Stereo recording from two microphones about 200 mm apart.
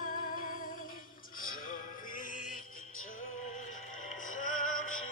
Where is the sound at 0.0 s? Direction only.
45° left (ahead or behind).